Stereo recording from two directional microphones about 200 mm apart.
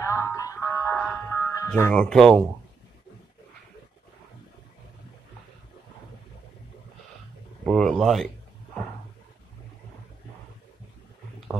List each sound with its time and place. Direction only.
0.0 s music: 15° left (ahead or behind)
7.6 s speech: centre (ahead or behind)